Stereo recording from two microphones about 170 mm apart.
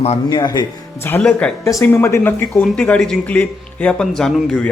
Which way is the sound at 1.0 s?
10° left (ahead or behind).